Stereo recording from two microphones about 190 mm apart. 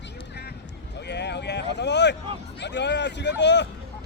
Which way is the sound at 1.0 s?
60° left (ahead or behind).